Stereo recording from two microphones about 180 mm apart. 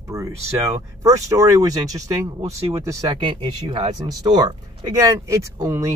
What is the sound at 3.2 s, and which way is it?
Speech, 30° right (ahead or behind).